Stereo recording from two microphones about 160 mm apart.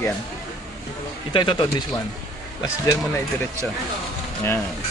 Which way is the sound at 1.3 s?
30° left (ahead or behind).